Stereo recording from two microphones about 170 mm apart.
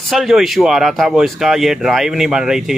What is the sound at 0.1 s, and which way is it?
Speech, centre (ahead or behind).